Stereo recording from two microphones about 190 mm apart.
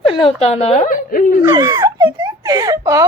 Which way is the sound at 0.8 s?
45° left (ahead or behind).